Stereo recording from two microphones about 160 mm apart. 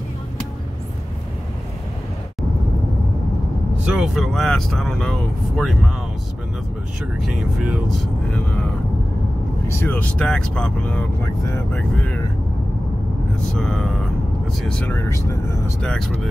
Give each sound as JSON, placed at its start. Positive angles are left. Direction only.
{"t": 3.8, "sound": "speech", "side_deg": -5}
{"t": 7.2, "sound": "speech", "side_deg": 0}
{"t": 13.5, "sound": "speech", "side_deg": 5}
{"t": 15.8, "sound": "speech", "side_deg": 5}